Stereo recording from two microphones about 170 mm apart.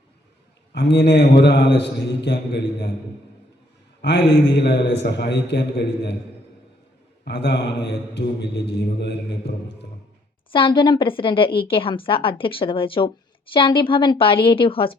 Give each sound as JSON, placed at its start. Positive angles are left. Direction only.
{"t": 0.7, "sound": "a man's voice", "side_deg": 85}
{"t": 4.0, "sound": "a man's voice", "side_deg": 85}
{"t": 7.3, "sound": "a man's voice", "side_deg": 80}
{"t": 10.5, "sound": "a woman's voice", "side_deg": 30}